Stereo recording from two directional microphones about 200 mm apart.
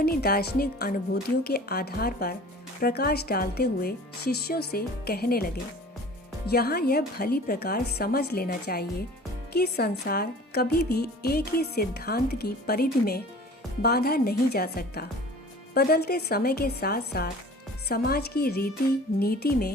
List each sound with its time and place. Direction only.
0.0 s a woman's voice: 50° left (ahead or behind)